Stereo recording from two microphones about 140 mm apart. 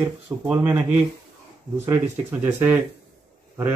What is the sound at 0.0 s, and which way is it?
Speech, 10° right (ahead or behind).